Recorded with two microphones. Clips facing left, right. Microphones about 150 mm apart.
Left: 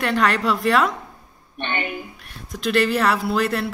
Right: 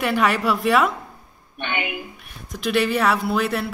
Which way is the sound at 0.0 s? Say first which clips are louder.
Even; 5° right (ahead or behind).